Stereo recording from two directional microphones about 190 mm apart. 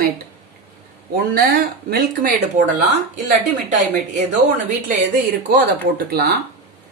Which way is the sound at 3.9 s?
40° right (ahead or behind).